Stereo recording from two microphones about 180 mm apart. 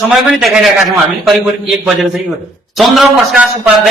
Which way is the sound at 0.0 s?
Centre (ahead or behind).